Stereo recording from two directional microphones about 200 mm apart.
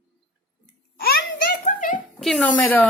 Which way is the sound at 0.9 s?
45° left (ahead or behind).